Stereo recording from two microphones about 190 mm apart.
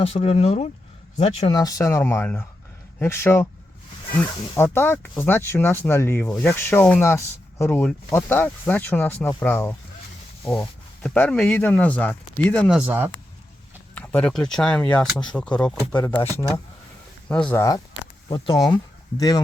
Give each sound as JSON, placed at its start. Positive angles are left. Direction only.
{"t": 0.0, "sound": "speech", "side_deg": 30}
{"t": 1.5, "sound": "speech", "side_deg": 20}
{"t": 4.5, "sound": "speech", "side_deg": 10}
{"t": 13.9, "sound": "speech", "side_deg": 5}
{"t": 16.0, "sound": "speech", "side_deg": 25}
{"t": 17.2, "sound": "speech", "side_deg": 5}
{"t": 18.3, "sound": "speech", "side_deg": 25}